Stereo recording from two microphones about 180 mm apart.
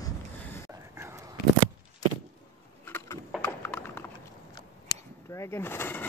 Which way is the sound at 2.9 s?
10° left (ahead or behind).